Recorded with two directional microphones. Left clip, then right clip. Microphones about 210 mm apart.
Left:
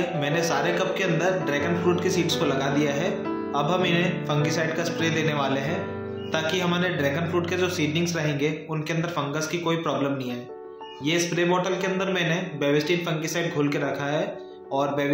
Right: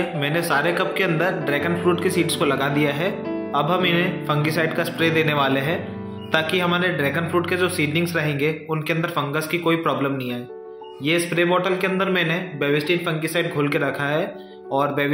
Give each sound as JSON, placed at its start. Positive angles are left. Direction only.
{"t": 0.2, "sound": "speech", "side_deg": -15}
{"t": 11.1, "sound": "speech", "side_deg": -20}